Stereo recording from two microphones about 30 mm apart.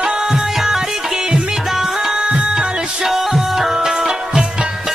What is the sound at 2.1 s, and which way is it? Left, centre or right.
Music, right.